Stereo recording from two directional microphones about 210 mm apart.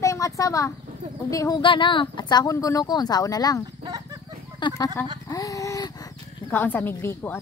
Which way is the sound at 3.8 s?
20° right (ahead or behind).